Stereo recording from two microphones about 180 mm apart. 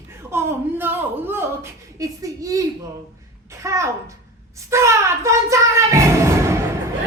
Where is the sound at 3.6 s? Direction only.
15° right (ahead or behind).